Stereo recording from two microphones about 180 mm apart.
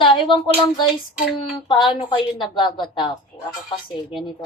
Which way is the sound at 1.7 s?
25° left (ahead or behind).